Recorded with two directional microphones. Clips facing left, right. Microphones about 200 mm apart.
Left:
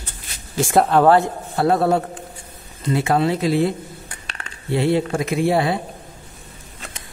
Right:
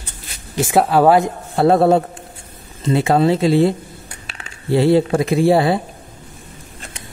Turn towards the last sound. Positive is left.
turn(degrees=-35)  # may be behind; listen again after turning